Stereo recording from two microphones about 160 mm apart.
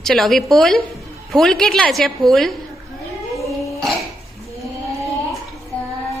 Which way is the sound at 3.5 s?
20° left (ahead or behind).